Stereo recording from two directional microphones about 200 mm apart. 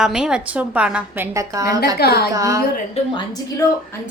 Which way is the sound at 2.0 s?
50° left (ahead or behind).